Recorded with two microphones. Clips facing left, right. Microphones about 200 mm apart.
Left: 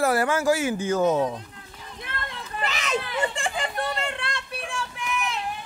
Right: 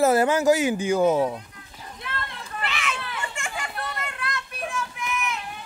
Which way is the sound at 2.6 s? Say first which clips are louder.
Left 4 dB; 40° left (ahead or behind).